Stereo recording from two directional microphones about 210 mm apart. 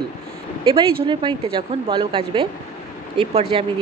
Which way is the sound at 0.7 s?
25° right (ahead or behind).